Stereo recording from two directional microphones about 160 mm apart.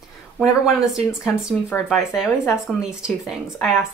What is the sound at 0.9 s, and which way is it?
Speech, 5° right (ahead or behind).